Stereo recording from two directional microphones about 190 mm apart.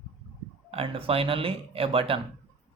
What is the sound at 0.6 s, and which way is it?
Speech, 30° right (ahead or behind).